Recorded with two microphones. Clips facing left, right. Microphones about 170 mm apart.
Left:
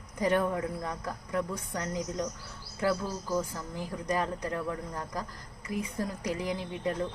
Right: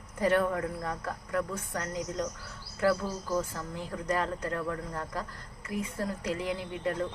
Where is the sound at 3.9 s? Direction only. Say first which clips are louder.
Even; 15° left (ahead or behind).